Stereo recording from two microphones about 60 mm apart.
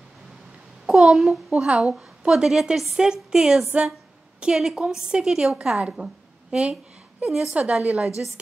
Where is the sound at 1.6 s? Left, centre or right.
Centre.